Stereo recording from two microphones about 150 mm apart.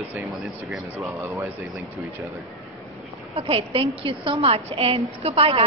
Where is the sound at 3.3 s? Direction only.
40° right (ahead or behind).